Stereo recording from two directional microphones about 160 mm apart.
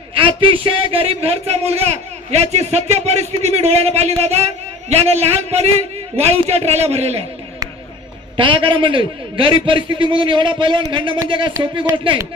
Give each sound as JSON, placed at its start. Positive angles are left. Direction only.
{"t": 0.1, "sound": "speech", "side_deg": -30}
{"t": 8.4, "sound": "speech", "side_deg": -30}